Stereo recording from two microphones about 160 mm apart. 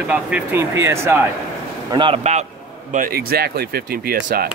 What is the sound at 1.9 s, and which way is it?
Speech, 35° right (ahead or behind).